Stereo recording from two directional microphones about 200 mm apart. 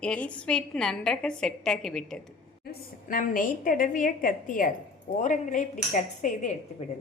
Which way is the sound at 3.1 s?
45° left (ahead or behind).